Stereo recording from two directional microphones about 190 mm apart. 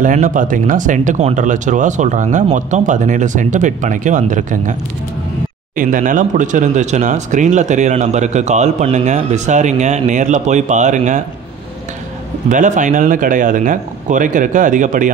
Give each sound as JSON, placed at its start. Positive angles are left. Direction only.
{"t": 0.0, "sound": "speech", "side_deg": -40}
{"t": 5.8, "sound": "speech", "side_deg": -45}
{"t": 12.4, "sound": "speech", "side_deg": -40}